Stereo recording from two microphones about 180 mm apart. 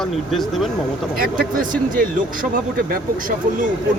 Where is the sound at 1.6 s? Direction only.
50° right (ahead or behind).